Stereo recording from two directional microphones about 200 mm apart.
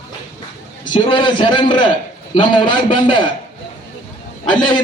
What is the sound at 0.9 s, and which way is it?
A man's voice, 25° left (ahead or behind).